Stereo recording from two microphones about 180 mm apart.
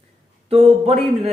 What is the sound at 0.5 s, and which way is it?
Speech, 30° right (ahead or behind).